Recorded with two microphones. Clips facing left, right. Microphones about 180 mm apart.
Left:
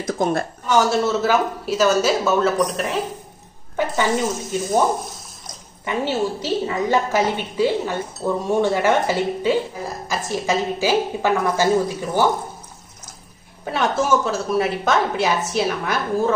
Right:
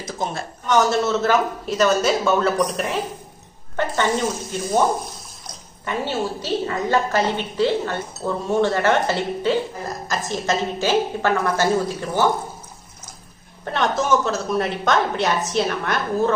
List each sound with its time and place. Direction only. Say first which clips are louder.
0.0 s a woman's voice: left 6 dB; 55° left (ahead or behind)
0.7 s a woman's voice: even; 5° left (ahead or behind)
5.9 s a woman's voice: left 2 dB; 15° left (ahead or behind)
13.7 s a woman's voice: left 1 dB; 5° left (ahead or behind)